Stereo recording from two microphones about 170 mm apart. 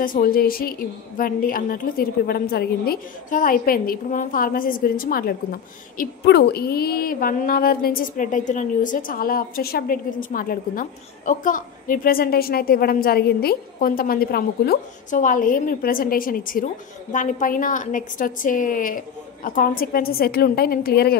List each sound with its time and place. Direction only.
0.0 s a woman's voice: 55° left (ahead or behind)